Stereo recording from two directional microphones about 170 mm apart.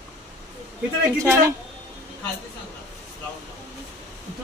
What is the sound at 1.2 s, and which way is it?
Speech, 15° right (ahead or behind).